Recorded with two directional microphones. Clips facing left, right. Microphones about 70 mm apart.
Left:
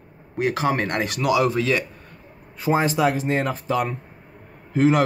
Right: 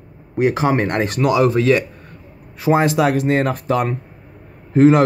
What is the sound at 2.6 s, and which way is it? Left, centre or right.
Speech, right.